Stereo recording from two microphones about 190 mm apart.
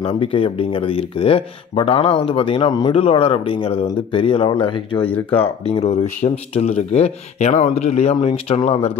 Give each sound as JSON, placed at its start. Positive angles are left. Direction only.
{"t": 0.0, "sound": "speech", "side_deg": 30}